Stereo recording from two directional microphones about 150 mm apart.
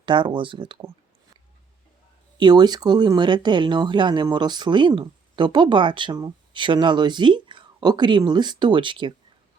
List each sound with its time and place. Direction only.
0.0 s speech: 30° right (ahead or behind)
2.4 s speech: 30° right (ahead or behind)